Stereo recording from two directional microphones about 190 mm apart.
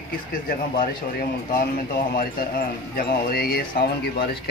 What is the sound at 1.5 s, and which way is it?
Speech, 50° left (ahead or behind).